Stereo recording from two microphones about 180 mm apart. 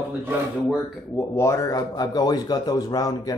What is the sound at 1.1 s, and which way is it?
A man's voice, 15° left (ahead or behind).